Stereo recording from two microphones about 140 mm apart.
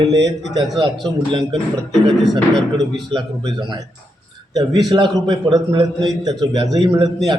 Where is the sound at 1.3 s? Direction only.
35° right (ahead or behind).